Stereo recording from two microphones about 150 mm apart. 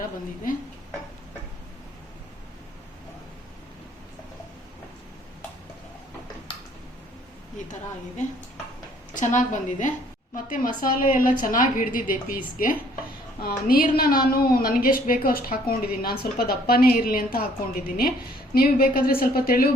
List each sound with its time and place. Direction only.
9.1 s a woman's voice: 55° left (ahead or behind); by 19.6 s 80° left